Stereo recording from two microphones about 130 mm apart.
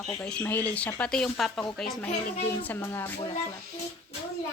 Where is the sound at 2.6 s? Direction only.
15° left (ahead or behind).